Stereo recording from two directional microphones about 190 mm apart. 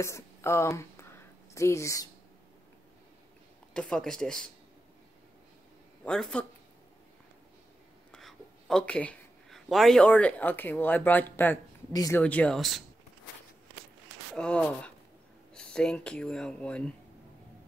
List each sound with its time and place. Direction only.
0.0 s speech: 15° left (ahead or behind)
3.7 s speech: 5° left (ahead or behind)
6.0 s speech: 5° left (ahead or behind)
8.1 s speech: centre (ahead or behind)
14.3 s speech: 5° left (ahead or behind)